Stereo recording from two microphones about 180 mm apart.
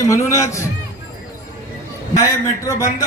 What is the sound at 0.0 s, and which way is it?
Speech, 15° left (ahead or behind).